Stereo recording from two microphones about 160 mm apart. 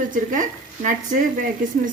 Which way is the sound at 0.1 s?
55° right (ahead or behind).